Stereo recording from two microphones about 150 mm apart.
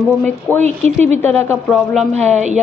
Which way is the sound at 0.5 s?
15° right (ahead or behind).